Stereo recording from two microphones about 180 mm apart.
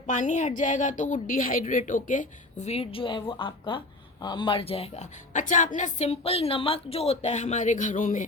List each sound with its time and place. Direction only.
0.1 s a woman's voice: 45° left (ahead or behind)